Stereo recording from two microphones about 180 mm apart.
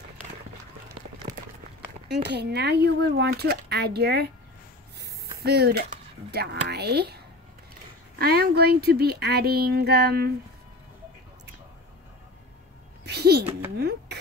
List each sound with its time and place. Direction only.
2.2 s speech: 65° right (ahead or behind)
5.4 s speech: 60° right (ahead or behind)
8.2 s speech: 60° right (ahead or behind)
13.0 s music: 65° right (ahead or behind)
13.7 s a sound: 65° right (ahead or behind)